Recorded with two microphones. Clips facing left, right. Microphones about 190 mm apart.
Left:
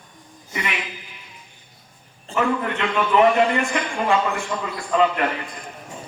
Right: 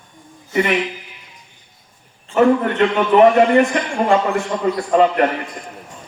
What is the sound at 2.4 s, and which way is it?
A man's voice, 40° right (ahead or behind).